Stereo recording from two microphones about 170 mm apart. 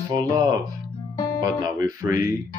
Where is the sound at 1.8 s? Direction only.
20° right (ahead or behind).